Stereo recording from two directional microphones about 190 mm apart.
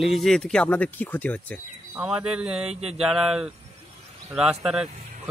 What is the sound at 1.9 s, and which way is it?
Speech, 5° right (ahead or behind).